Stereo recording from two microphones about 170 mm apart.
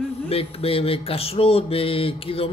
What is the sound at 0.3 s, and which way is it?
Speech, 35° left (ahead or behind).